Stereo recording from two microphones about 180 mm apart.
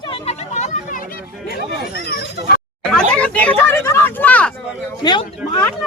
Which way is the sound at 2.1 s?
60° left (ahead or behind).